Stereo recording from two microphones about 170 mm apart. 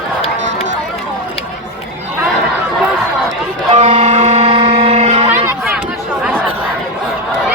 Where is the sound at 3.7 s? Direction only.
40° right (ahead or behind).